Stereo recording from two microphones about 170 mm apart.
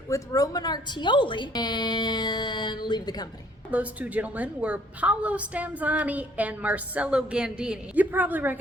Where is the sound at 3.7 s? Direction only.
10° right (ahead or behind).